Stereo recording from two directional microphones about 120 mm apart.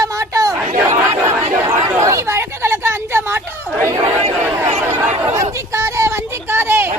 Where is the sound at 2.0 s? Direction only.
25° right (ahead or behind).